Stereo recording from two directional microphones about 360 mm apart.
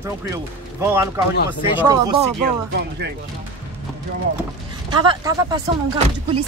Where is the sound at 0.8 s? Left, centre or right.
Centre.